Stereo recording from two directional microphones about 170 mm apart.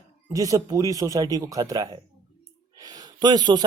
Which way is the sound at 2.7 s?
25° right (ahead or behind).